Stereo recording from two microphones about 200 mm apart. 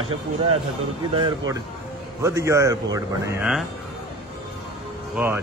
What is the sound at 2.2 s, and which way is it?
Speech, 15° right (ahead or behind).